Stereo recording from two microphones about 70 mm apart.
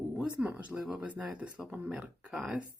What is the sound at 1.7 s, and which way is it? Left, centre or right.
Speech, right.